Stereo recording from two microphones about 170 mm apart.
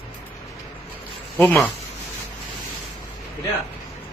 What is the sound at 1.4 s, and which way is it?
Speech, 10° left (ahead or behind).